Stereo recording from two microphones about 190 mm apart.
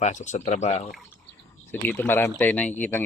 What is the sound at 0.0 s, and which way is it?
Speech, 40° left (ahead or behind).